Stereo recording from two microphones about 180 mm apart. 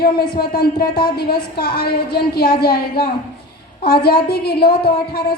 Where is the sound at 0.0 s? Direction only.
60° left (ahead or behind).